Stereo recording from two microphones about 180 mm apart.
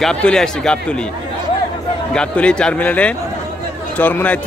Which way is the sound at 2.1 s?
5° left (ahead or behind).